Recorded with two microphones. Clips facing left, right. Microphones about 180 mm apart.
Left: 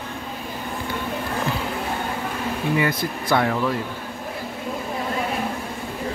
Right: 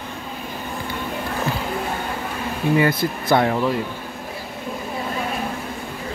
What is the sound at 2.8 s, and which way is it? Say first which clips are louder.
Speech: right 4 dB; 25° right (ahead or behind).